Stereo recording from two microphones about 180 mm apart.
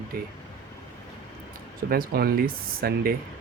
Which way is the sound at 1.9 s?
55° right (ahead or behind).